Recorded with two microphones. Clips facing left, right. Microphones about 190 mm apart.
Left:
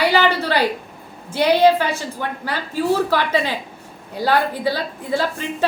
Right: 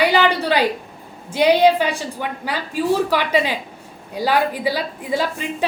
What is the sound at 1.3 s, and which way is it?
A woman's voice, 15° right (ahead or behind).